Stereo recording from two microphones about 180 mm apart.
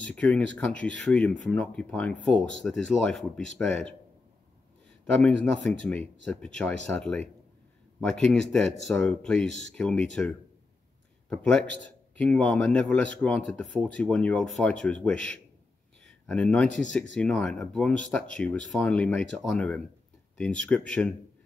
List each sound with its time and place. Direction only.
0.0 s speech: 5° left (ahead or behind)
5.0 s speech: 5° left (ahead or behind)